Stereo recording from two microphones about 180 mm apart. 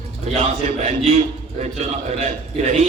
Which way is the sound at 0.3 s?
40° right (ahead or behind).